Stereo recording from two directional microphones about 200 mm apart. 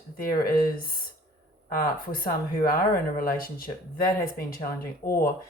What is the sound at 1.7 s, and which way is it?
Speech, 45° left (ahead or behind).